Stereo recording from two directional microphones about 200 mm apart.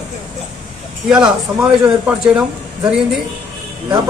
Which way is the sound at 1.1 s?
5° right (ahead or behind).